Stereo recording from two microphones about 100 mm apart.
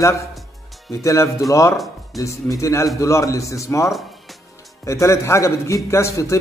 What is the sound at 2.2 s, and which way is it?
A man's voice, 30° left (ahead or behind).